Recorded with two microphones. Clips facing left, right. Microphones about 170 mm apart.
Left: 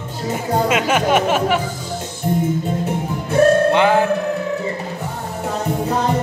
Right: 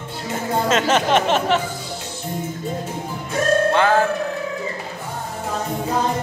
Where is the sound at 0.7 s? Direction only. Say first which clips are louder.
Even; 10° left (ahead or behind).